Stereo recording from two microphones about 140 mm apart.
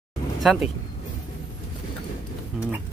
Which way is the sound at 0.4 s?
Centre (ahead or behind).